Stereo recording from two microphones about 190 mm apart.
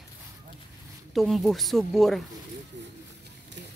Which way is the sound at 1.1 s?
Centre (ahead or behind).